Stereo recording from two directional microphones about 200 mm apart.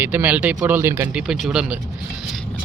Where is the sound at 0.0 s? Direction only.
10° right (ahead or behind).